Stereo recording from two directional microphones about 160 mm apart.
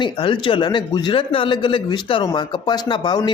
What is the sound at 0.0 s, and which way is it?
A man's voice, 30° left (ahead or behind).